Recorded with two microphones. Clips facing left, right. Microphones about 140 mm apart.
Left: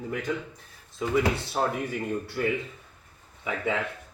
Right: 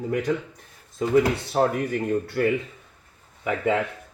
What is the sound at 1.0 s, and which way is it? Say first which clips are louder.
Speech: right 5 dB; 45° right (ahead or behind).